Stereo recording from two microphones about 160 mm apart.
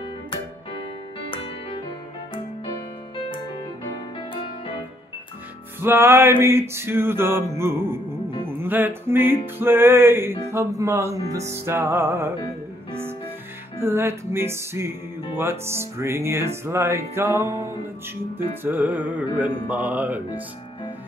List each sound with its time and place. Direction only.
0.0 s music: 30° left (ahead or behind)
4.2 s music: 35° left (ahead or behind)
5.8 s music: 15° right (ahead or behind)
13.7 s music: 15° right (ahead or behind)